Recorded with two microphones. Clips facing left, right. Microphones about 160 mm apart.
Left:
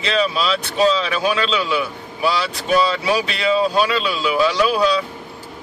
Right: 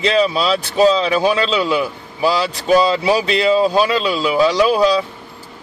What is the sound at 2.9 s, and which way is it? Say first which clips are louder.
Speech: right 5 dB; 30° right (ahead or behind).